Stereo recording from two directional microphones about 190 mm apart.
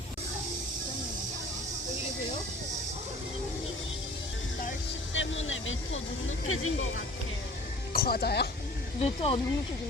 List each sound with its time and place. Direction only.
5.1 s speech: 85° left
7.9 s speech: 55° left (ahead or behind)
9.0 s speech: 35° left (ahead or behind)